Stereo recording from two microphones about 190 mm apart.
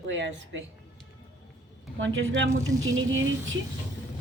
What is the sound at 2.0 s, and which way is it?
A woman's voice, 85° right.